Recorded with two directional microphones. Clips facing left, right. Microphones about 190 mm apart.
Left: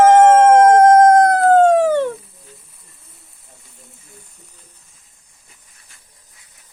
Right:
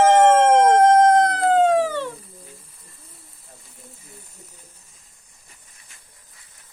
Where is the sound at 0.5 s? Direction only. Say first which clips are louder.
Left 5 dB; 45° left (ahead or behind).